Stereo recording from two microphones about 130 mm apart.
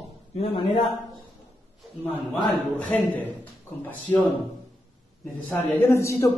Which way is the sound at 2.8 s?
10° left (ahead or behind).